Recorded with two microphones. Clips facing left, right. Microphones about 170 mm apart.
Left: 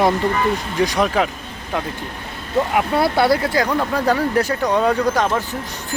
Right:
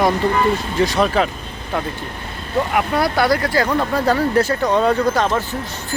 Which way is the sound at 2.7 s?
25° left (ahead or behind).